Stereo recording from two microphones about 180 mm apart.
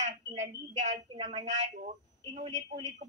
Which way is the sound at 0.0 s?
40° right (ahead or behind).